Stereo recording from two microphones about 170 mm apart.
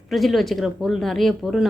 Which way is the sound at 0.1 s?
Centre (ahead or behind).